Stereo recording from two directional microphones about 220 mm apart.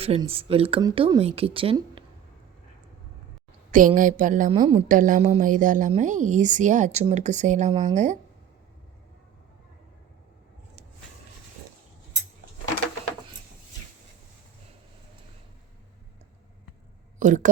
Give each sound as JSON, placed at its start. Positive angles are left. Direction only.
{"t": 0.0, "sound": "speech", "side_deg": -25}
{"t": 3.7, "sound": "a woman's voice", "side_deg": -40}
{"t": 17.2, "sound": "speech", "side_deg": -35}